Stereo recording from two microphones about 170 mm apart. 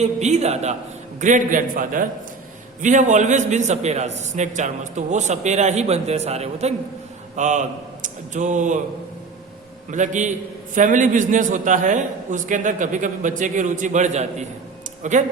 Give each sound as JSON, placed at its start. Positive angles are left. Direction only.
{"t": 0.0, "sound": "a man's voice", "side_deg": -40}
{"t": 9.9, "sound": "a man's voice", "side_deg": -45}